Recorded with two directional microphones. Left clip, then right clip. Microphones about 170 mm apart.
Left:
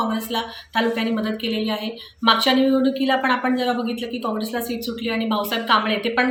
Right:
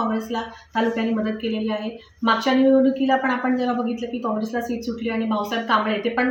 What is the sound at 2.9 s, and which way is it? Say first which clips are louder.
A woman's voice: left 1 dB; 5° left (ahead or behind).